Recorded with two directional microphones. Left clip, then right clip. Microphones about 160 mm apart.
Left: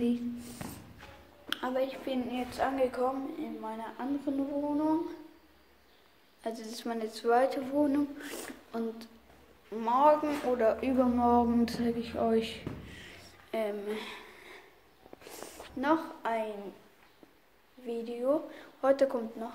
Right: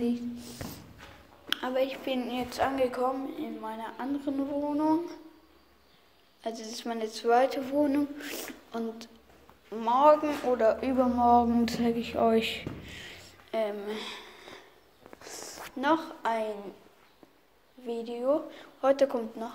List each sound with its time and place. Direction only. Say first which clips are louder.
0.0 s a sound: right 1 dB; 5° left (ahead or behind)
1.5 s a woman's voice: right 3 dB; 5° right (ahead or behind); by 3.0 s 20° right (ahead or behind)
3.0 s a woman's voice: right 2 dB; 5° right (ahead or behind)
6.4 s a woman's voice: right 2 dB; 10° left (ahead or behind)
11.6 s a woman's voice: right 3 dB; 5° right (ahead or behind)
13.5 s a sound: right 2 dB; 10° left (ahead or behind)
15.8 s a woman's voice: right 2 dB; 5° right (ahead or behind)
17.8 s a woman's voice: right 2 dB; 5° left (ahead or behind)